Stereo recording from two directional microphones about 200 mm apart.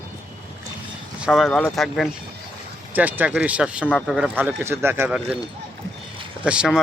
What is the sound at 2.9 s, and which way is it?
Speech, 10° right (ahead or behind).